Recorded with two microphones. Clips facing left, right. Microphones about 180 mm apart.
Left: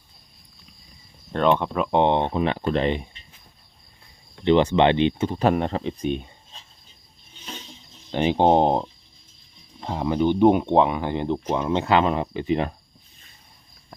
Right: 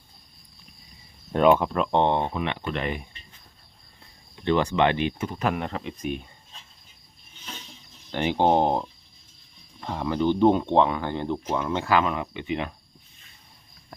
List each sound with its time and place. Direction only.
1.3 s speech: 10° right (ahead or behind)
2.0 s speech: 20° left (ahead or behind)
4.4 s speech: 25° left (ahead or behind)
8.1 s speech: 20° left (ahead or behind); by 12.7 s 35° left (ahead or behind)